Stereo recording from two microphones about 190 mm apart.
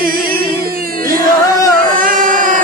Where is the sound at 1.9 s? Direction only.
45° right (ahead or behind).